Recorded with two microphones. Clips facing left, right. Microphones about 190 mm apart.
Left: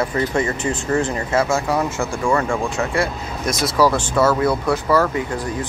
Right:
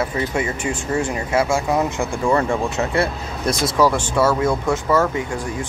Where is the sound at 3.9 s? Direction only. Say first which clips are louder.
Left 1 dB; 10° right (ahead or behind).